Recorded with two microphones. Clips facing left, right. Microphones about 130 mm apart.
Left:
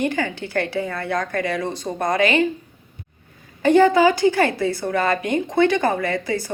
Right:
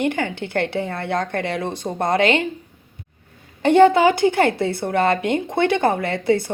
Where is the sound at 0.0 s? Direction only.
20° right (ahead or behind).